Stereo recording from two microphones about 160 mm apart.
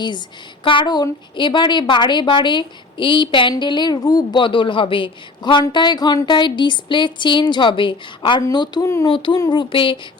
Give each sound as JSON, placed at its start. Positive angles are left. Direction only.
{"t": 0.6, "sound": "a woman's voice", "side_deg": 30}
{"t": 9.1, "sound": "a child's voice", "side_deg": 30}